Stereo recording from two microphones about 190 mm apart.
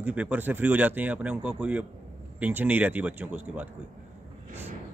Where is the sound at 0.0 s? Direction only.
10° right (ahead or behind).